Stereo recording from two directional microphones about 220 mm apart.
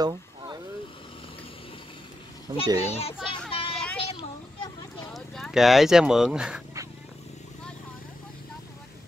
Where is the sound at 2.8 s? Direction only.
25° left (ahead or behind).